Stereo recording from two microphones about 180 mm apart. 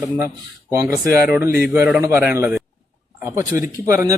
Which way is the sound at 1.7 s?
10° right (ahead or behind).